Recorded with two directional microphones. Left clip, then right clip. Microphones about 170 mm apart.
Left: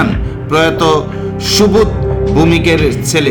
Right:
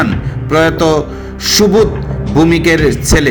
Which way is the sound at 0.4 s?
20° right (ahead or behind).